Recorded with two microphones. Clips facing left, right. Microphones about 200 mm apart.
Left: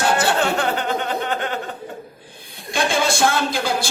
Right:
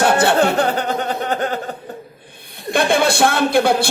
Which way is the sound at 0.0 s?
60° right (ahead or behind).